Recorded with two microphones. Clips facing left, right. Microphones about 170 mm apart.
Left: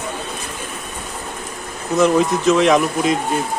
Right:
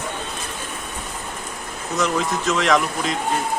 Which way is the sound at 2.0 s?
15° left (ahead or behind).